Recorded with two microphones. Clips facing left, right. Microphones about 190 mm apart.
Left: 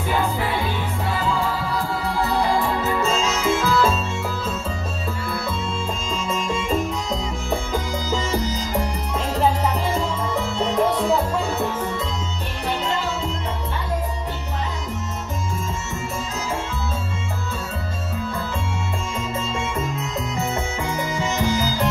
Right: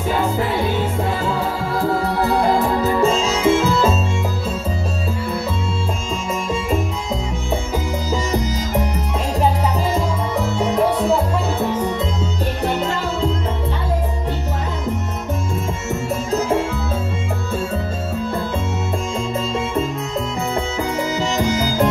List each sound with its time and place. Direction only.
2.8 s music: 30° right (ahead or behind)
10.6 s music: 5° right (ahead or behind)
21.2 s music: 45° right (ahead or behind)